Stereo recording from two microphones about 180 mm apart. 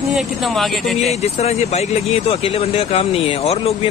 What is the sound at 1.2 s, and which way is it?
Speech, 35° left (ahead or behind).